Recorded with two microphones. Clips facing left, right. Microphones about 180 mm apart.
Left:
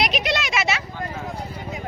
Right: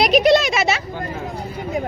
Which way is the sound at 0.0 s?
35° right (ahead or behind).